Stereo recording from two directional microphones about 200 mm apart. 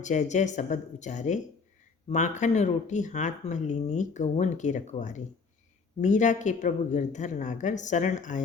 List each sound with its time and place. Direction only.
0.0 s speech: 35° left (ahead or behind)